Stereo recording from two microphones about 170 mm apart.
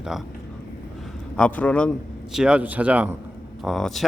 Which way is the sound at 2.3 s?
5° right (ahead or behind).